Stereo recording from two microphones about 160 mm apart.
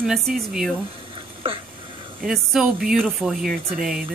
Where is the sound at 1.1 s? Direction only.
35° right (ahead or behind).